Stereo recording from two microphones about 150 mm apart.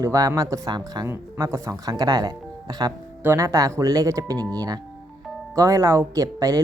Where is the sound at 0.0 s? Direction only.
25° right (ahead or behind).